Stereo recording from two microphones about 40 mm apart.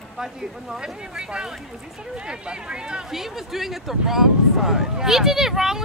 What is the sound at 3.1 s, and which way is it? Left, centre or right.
Speech, centre.